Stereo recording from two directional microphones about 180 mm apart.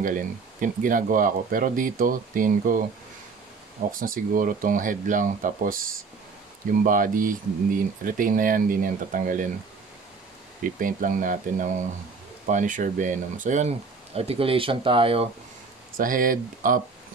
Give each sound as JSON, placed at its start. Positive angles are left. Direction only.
{"t": 0.0, "sound": "speech", "side_deg": -45}
{"t": 4.0, "sound": "speech", "side_deg": -50}
{"t": 6.8, "sound": "speech", "side_deg": -50}
{"t": 10.6, "sound": "speech", "side_deg": -50}
{"t": 16.0, "sound": "speech", "side_deg": -50}